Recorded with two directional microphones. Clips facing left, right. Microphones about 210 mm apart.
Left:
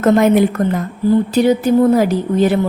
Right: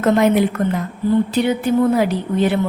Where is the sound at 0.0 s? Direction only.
45° left (ahead or behind).